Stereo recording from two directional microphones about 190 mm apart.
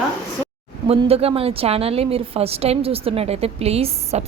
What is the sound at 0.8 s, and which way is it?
A woman's voice, 30° right (ahead or behind).